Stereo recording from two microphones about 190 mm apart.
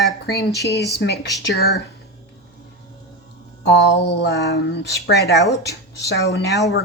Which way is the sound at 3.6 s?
60° left (ahead or behind).